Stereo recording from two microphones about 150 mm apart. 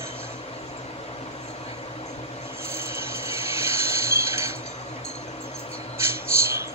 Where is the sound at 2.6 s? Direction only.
15° right (ahead or behind).